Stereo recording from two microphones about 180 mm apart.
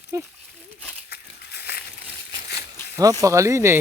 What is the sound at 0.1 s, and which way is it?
Speech, 15° right (ahead or behind).